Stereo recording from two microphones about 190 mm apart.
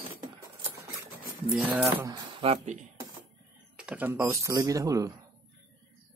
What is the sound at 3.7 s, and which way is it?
Typing, 5° right (ahead or behind).